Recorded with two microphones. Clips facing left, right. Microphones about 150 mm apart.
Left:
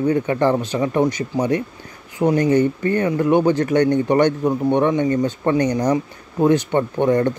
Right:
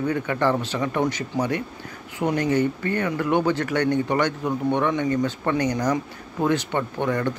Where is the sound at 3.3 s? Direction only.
15° left (ahead or behind).